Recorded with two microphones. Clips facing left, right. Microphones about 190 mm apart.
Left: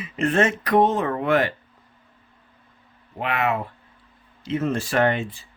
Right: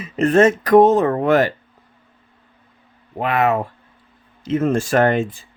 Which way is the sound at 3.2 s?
40° right (ahead or behind).